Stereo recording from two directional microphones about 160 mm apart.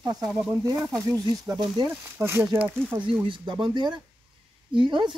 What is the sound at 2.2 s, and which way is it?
Speech, 15° right (ahead or behind).